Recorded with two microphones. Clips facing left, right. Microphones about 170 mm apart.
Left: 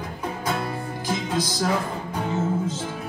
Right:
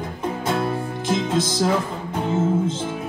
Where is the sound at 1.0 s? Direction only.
25° right (ahead or behind).